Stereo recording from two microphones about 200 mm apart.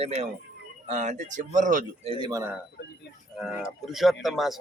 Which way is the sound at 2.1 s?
20° right (ahead or behind).